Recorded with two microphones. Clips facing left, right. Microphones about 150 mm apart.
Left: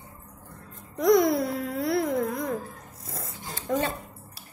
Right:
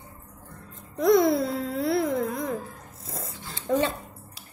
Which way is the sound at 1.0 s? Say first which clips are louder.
Right 1 dB; 25° right (ahead or behind).